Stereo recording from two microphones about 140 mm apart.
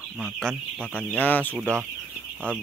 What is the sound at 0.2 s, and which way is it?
Speech, centre (ahead or behind).